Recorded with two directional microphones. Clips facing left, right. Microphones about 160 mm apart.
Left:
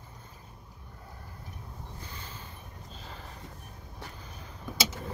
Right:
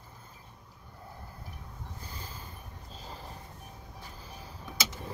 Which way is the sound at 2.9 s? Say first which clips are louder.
Right 2 dB; 35° right (ahead or behind).